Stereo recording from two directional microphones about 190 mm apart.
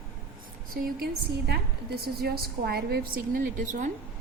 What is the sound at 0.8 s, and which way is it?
A woman's voice, 55° right (ahead or behind).